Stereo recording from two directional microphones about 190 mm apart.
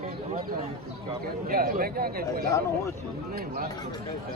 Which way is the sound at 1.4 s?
50° right (ahead or behind).